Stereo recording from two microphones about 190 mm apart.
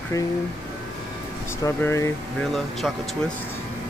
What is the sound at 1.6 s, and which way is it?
Speech, 15° left (ahead or behind).